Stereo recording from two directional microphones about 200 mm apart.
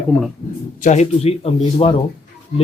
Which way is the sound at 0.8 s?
35° left (ahead or behind).